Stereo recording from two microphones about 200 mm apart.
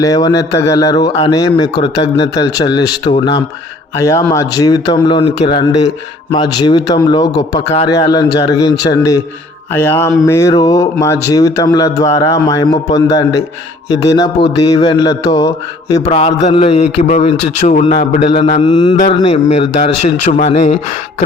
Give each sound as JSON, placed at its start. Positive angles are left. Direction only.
{"t": 0.0, "sound": "mantra", "side_deg": 20}
{"t": 3.9, "sound": "mantra", "side_deg": 15}
{"t": 8.9, "sound": "speech", "side_deg": 20}
{"t": 13.9, "sound": "mantra", "side_deg": 20}
{"t": 16.1, "sound": "a man's voice", "side_deg": 30}
{"t": 18.3, "sound": "mantra", "side_deg": 25}
{"t": 19.2, "sound": "a man's voice", "side_deg": 25}